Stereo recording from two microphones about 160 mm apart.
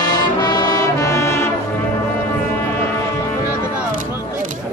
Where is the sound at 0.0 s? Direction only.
25° left (ahead or behind).